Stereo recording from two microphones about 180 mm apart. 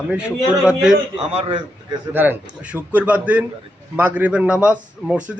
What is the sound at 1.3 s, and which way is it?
Speech, 30° right (ahead or behind).